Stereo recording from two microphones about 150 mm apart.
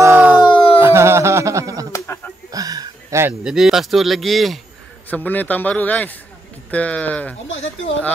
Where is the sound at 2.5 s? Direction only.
25° right (ahead or behind).